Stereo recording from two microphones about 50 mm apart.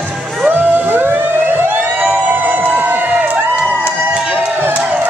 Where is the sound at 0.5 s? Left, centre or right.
Right.